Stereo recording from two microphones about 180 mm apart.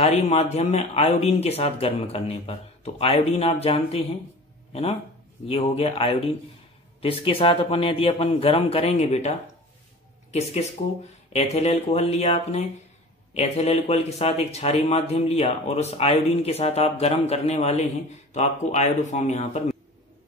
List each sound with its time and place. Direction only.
0.0 s speech: 35° left (ahead or behind)
5.5 s speech: 35° left (ahead or behind)